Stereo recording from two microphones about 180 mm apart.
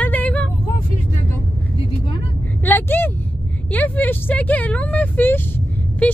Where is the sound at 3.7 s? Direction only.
10° left (ahead or behind).